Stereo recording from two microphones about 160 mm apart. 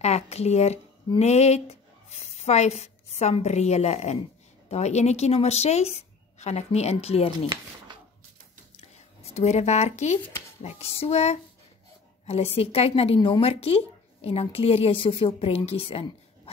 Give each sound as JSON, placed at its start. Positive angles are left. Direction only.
{"t": 0.0, "sound": "speech", "side_deg": 45}
{"t": 9.2, "sound": "speech", "side_deg": 45}
{"t": 10.6, "sound": "a sound", "side_deg": 40}
{"t": 12.3, "sound": "a woman's voice", "side_deg": 40}